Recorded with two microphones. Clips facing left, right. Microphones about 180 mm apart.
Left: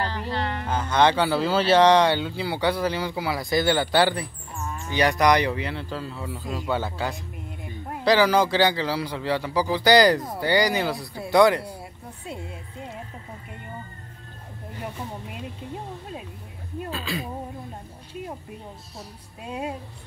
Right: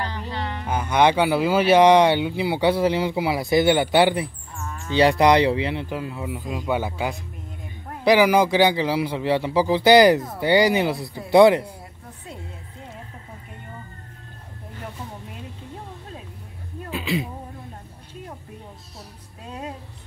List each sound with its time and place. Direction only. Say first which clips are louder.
0.0 s speech: left 2 dB; 15° right (ahead or behind)
16.9 s speech: right 7 dB; 20° right (ahead or behind)
19.4 s speech: left 3 dB; 10° left (ahead or behind)